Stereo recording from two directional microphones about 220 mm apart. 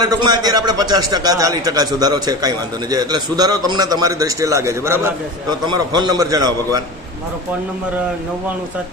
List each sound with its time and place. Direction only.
0.0 s a man's voice: 20° right (ahead or behind)